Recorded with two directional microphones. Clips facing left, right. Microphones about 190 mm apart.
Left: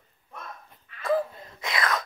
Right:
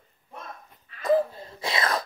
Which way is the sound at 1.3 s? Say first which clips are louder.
Right 3 dB; 30° right (ahead or behind).